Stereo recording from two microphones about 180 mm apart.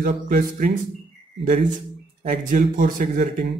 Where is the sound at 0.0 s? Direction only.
45° right (ahead or behind).